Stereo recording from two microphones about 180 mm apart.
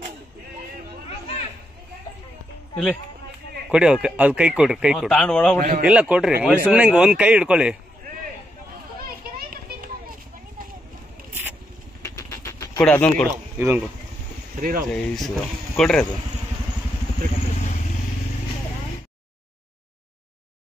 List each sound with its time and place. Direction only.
2.7 s speech: 10° left (ahead or behind)
3.7 s speech: 5° right (ahead or behind)
5.6 s a man's voice: 55° right (ahead or behind)
5.9 s speech: 5° right (ahead or behind)
9.0 s children playing: 55° right (ahead or behind)
12.0 s vehicle: 20° left (ahead or behind)
12.8 s speech: 5° left (ahead or behind)
13.6 s speech: 15° right (ahead or behind)
14.6 s speech: 50° right (ahead or behind)
15.1 s speech: centre (ahead or behind)